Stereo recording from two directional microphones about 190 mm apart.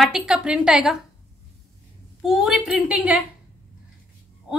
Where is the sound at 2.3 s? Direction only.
Centre (ahead or behind).